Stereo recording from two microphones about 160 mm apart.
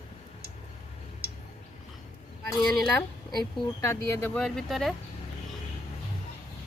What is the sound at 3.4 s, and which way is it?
Speech, 20° left (ahead or behind).